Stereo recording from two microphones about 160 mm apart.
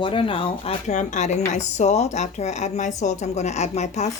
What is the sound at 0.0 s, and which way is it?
A woman's voice, 35° left (ahead or behind).